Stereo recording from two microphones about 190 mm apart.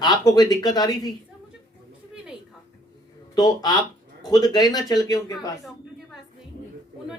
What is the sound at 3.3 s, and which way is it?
Speech, 20° left (ahead or behind).